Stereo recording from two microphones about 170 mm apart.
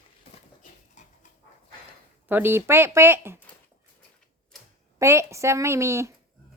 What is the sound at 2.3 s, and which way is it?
Speech, 10° right (ahead or behind).